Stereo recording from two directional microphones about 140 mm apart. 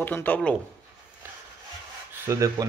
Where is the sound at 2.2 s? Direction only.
20° right (ahead or behind).